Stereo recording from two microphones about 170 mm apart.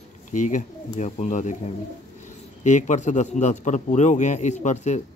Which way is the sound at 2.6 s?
45° left (ahead or behind).